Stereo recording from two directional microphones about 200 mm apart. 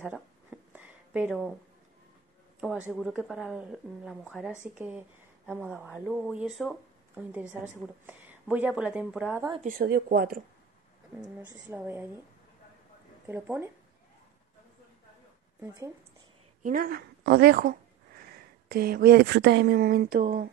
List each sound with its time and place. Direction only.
0.7 s a sound: 5° right (ahead or behind)
2.9 s a woman's voice: 5° right (ahead or behind)
9.7 s speech: 50° right (ahead or behind)
11.1 s speech: 10° right (ahead or behind)
13.3 s speech: 10° right (ahead or behind)
15.6 s speech: 15° right (ahead or behind)
16.6 s speech: 45° right (ahead or behind)